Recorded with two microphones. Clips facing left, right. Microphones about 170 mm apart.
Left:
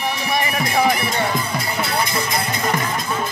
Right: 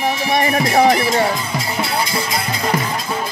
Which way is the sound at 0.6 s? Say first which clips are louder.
Right 5 dB; 25° right (ahead or behind).